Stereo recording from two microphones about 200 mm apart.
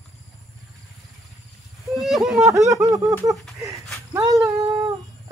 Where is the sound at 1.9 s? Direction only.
Centre (ahead or behind).